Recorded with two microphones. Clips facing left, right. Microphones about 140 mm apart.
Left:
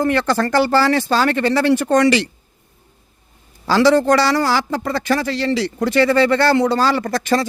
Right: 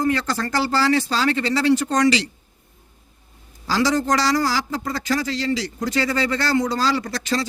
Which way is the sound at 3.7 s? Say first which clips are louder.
Left 7 dB; 65° left (ahead or behind).